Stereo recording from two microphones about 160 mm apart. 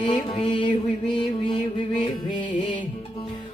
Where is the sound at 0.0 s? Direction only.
30° left (ahead or behind).